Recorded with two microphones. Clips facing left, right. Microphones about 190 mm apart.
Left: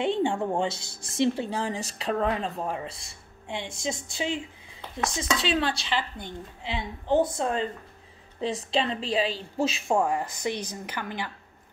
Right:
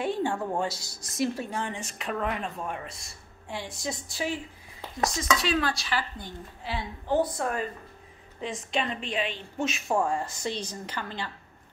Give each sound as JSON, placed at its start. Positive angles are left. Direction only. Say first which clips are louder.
{"t": 0.0, "sound": "a woman's voice", "louder": "left 3 dB", "side_deg": 25}
{"t": 9.9, "sound": "a woman's voice", "louder": "left 1 dB", "side_deg": 15}